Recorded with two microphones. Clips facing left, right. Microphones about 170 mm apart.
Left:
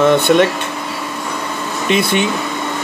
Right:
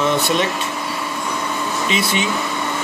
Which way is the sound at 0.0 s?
60° left (ahead or behind).